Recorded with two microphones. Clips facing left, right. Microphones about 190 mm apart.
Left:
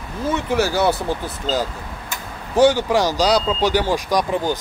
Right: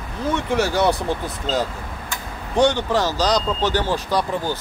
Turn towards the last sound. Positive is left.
turn(degrees=15)  # may be behind; listen again after turning